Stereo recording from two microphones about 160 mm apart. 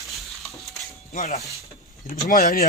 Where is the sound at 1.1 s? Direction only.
55° left (ahead or behind).